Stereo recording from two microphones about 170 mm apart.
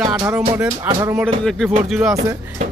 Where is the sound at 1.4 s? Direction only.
Centre (ahead or behind).